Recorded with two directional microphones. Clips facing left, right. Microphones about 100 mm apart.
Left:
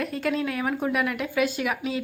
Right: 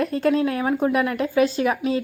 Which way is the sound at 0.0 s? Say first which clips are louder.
Right 6 dB; 35° right (ahead or behind).